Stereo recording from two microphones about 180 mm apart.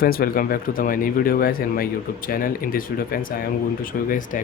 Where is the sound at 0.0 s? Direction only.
55° left (ahead or behind).